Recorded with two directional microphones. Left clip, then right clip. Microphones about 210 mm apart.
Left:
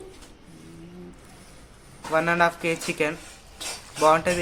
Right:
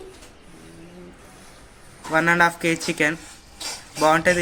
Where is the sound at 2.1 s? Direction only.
10° right (ahead or behind).